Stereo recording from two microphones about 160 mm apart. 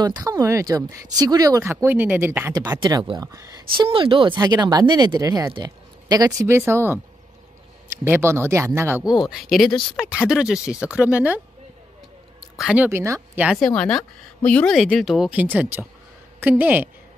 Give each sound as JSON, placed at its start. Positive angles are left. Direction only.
{"t": 0.0, "sound": "speech", "side_deg": -25}
{"t": 2.8, "sound": "speech", "side_deg": -30}
{"t": 9.1, "sound": "speech", "side_deg": 0}
{"t": 9.7, "sound": "speech", "side_deg": 30}
{"t": 9.9, "sound": "speech", "side_deg": -5}
{"t": 12.5, "sound": "speech", "side_deg": -5}
{"t": 13.5, "sound": "speech", "side_deg": 5}